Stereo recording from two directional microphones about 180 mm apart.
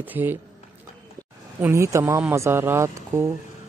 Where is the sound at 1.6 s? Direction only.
15° right (ahead or behind).